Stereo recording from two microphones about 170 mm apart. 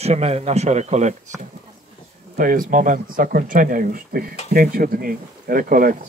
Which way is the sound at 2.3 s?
50° right (ahead or behind).